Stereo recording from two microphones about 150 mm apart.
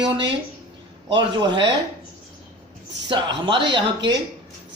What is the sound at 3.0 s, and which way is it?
Speech, 35° right (ahead or behind).